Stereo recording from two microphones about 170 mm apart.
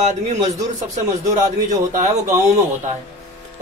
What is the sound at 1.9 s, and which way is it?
Speech, 45° right (ahead or behind).